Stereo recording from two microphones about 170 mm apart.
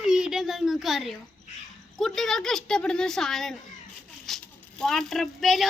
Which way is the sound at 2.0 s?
Centre (ahead or behind).